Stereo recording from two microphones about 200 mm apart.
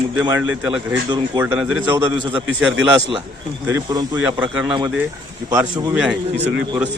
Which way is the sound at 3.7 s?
20° right (ahead or behind).